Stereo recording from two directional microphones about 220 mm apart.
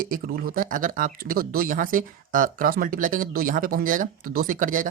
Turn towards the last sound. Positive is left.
turn(degrees=-35)  # may be behind; listen again after turning